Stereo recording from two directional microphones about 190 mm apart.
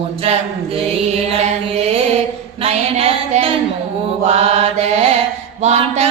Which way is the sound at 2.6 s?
30° right (ahead or behind).